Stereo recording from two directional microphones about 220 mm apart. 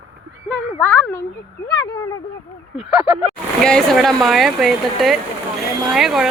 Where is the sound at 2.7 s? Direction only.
5° right (ahead or behind).